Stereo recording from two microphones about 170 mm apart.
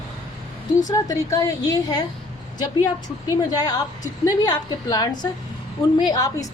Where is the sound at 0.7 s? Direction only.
20° left (ahead or behind).